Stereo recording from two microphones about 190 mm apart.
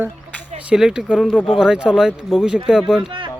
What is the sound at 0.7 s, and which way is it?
Speech, 5° right (ahead or behind).